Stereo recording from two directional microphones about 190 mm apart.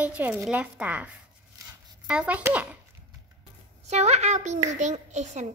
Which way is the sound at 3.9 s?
35° right (ahead or behind).